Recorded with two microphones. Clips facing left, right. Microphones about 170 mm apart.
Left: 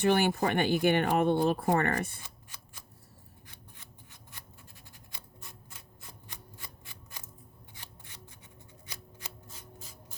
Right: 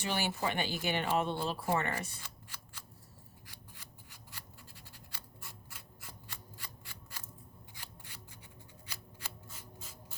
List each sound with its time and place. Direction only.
0.0 s speech: 55° left (ahead or behind)
2.2 s scissors: 20° left (ahead or behind)
5.1 s a sound: 20° left (ahead or behind)
8.9 s shuffling cards: 15° left (ahead or behind)